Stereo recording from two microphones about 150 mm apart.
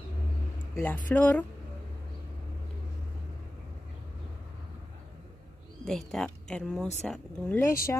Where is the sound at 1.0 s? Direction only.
10° left (ahead or behind).